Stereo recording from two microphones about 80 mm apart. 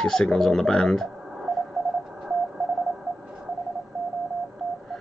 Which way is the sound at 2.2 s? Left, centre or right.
Centre.